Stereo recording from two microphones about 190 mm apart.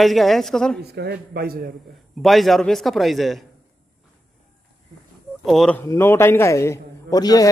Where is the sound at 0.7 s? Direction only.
60° right (ahead or behind).